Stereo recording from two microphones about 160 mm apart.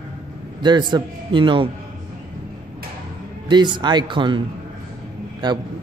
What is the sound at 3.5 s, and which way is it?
Speech, 30° right (ahead or behind).